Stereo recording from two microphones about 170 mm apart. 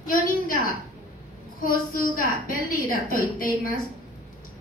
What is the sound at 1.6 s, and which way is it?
A woman's voice, 55° left (ahead or behind).